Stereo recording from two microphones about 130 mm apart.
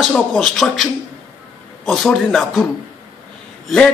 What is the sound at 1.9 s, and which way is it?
Speech, centre (ahead or behind).